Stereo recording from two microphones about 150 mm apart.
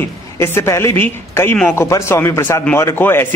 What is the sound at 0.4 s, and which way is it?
A man's voice, 20° left (ahead or behind).